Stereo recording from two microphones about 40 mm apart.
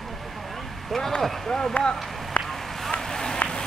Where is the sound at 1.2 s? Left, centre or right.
Centre.